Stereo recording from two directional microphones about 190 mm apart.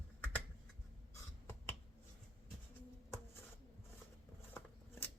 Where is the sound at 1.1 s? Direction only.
10° left (ahead or behind).